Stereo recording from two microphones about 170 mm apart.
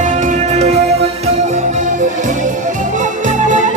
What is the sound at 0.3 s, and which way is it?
Music, 40° right (ahead or behind).